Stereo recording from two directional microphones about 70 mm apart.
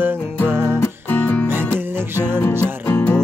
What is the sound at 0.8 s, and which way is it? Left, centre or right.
Music, left.